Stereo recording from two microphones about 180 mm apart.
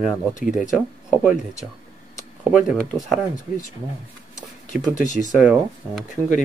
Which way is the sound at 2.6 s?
Centre (ahead or behind).